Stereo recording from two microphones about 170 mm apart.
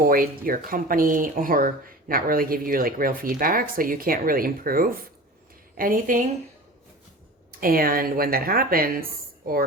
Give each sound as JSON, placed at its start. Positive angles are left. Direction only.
{"t": 0.0, "sound": "speech", "side_deg": -60}
{"t": 7.6, "sound": "speech", "side_deg": -60}